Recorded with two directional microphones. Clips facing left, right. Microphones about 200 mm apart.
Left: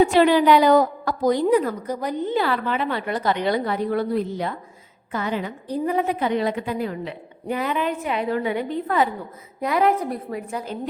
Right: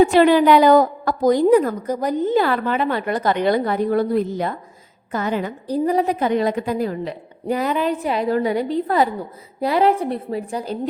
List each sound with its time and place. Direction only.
0.0 s a woman's voice: 50° right (ahead or behind); by 10.8 s 30° right (ahead or behind)